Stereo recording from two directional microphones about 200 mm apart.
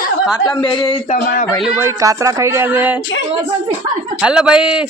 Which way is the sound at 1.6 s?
5° right (ahead or behind).